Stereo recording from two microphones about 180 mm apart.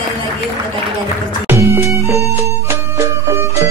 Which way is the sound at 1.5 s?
15° right (ahead or behind).